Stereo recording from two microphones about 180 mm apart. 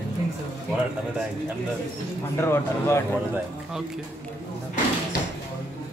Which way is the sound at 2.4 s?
15° left (ahead or behind).